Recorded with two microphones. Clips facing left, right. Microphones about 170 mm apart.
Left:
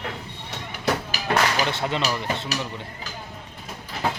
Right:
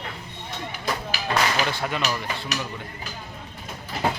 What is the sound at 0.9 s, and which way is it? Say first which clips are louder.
Music: left 5 dB; 70° left (ahead or behind).